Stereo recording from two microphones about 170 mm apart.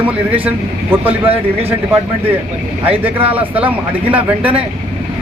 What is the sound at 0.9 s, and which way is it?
Speech, 10° right (ahead or behind).